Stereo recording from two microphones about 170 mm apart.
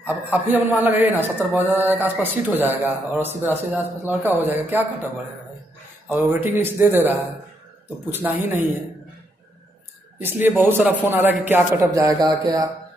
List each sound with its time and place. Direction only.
0.0 s a man's voice: 10° right (ahead or behind)
6.0 s a man's voice: 10° right (ahead or behind)
10.1 s a man's voice: 10° right (ahead or behind)